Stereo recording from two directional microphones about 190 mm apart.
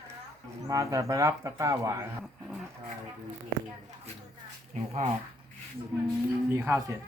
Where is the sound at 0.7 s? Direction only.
15° right (ahead or behind).